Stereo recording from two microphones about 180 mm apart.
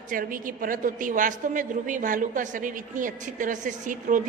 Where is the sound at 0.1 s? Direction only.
50° right (ahead or behind).